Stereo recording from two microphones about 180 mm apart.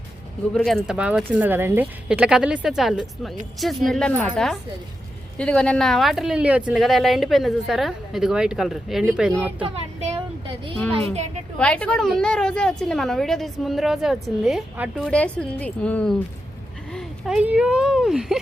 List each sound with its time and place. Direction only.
0.5 s a woman's voice: 5° left (ahead or behind)
5.4 s a woman's voice: 5° left (ahead or behind)
9.6 s a sound: 35° right (ahead or behind)
10.8 s a woman's voice: 5° left (ahead or behind)